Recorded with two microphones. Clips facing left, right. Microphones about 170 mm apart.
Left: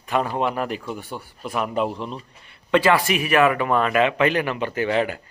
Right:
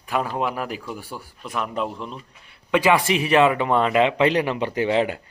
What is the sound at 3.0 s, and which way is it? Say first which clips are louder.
Speech: right 1 dB; 25° right (ahead or behind).